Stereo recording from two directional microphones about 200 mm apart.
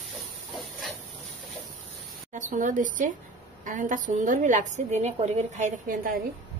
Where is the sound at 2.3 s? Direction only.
40° right (ahead or behind).